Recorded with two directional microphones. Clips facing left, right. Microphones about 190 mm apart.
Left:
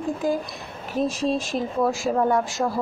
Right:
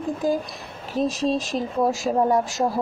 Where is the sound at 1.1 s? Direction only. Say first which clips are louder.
Right 2 dB; 40° right (ahead or behind).